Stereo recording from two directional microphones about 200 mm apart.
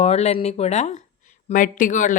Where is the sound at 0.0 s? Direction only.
30° left (ahead or behind).